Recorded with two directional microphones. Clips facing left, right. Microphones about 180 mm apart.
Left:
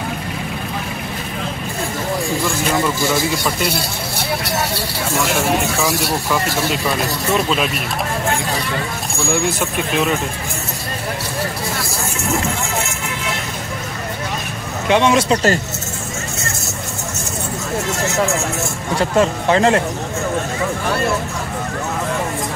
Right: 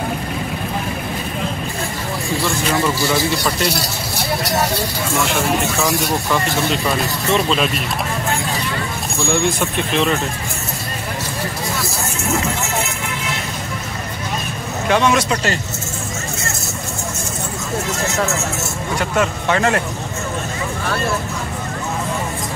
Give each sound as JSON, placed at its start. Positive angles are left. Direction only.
{"t": 2.7, "sound": "speech", "side_deg": 0}
{"t": 5.6, "sound": "speech", "side_deg": 5}
{"t": 9.3, "sound": "speech", "side_deg": 5}
{"t": 14.9, "sound": "a man's voice", "side_deg": 25}
{"t": 18.9, "sound": "a man's voice", "side_deg": 30}